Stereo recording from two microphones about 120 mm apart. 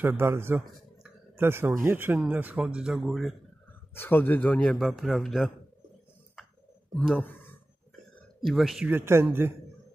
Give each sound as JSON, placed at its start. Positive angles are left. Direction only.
{"t": 0.0, "sound": "a man's voice", "side_deg": -20}
{"t": 3.9, "sound": "a man's voice", "side_deg": 15}
{"t": 7.0, "sound": "speech", "side_deg": 10}
{"t": 8.4, "sound": "speech", "side_deg": 0}
{"t": 8.8, "sound": "a man's voice", "side_deg": -20}